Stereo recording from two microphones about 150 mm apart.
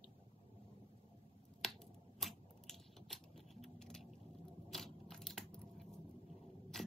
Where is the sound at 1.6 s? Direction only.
Centre (ahead or behind).